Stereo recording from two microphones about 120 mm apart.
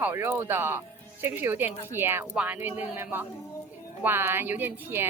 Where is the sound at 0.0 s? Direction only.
20° right (ahead or behind).